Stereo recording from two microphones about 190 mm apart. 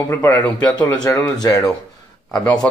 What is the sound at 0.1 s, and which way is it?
A man's voice, 20° left (ahead or behind).